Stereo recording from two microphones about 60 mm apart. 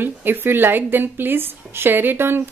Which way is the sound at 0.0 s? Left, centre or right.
Right.